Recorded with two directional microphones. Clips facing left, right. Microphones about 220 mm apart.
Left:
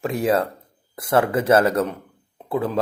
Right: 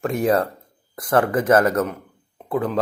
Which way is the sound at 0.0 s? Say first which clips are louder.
Right 1 dB; centre (ahead or behind).